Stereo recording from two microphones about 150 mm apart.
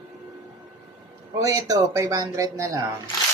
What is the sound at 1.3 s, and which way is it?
Speech, 20° right (ahead or behind).